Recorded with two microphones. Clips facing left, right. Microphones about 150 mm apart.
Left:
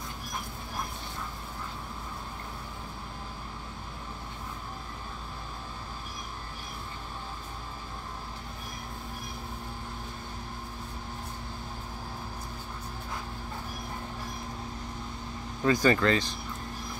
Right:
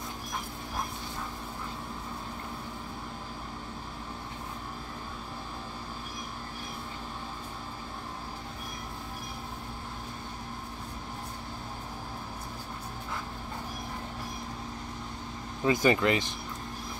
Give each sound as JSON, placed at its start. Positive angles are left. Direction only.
{"t": 15.6, "sound": "speech", "side_deg": -20}